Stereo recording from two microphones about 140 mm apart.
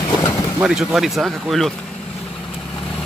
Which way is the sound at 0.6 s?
5° right (ahead or behind).